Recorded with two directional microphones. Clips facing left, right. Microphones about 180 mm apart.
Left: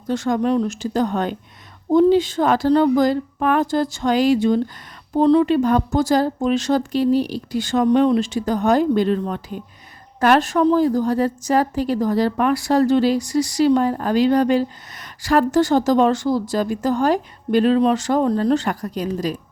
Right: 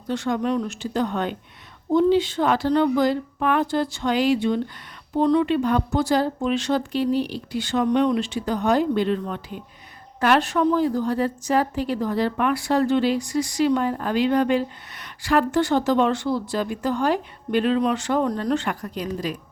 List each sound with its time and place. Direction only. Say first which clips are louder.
0.1 s speech: left 4 dB; 45° left (ahead or behind)
7.9 s speech: left 5 dB; 35° left (ahead or behind)